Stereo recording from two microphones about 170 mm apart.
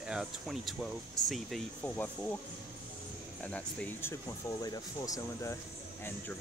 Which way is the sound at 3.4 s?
10° left (ahead or behind).